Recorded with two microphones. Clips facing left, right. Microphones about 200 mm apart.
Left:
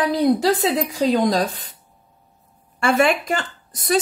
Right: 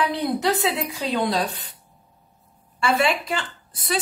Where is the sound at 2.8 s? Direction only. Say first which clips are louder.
Left 4 dB; 50° left (ahead or behind).